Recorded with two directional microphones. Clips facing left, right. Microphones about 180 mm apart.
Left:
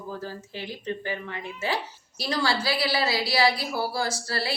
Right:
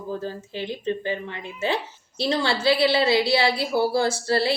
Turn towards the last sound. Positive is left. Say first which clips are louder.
# right 8 dB
turn(degrees=-25)  # may be behind; listen again after turning